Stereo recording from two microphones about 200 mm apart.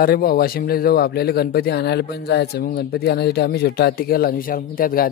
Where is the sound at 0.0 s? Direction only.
50° left (ahead or behind).